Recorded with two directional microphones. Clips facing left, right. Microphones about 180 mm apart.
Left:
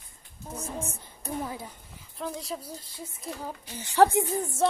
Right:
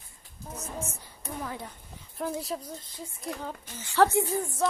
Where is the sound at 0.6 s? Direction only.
30° left (ahead or behind).